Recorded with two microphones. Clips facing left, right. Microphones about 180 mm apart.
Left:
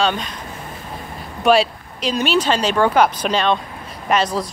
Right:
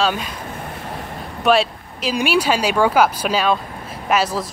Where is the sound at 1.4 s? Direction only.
Centre (ahead or behind).